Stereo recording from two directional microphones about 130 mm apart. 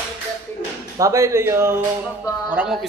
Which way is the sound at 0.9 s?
25° right (ahead or behind).